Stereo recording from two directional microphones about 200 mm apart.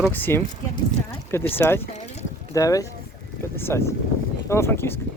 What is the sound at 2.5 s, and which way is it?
Speech, 15° left (ahead or behind).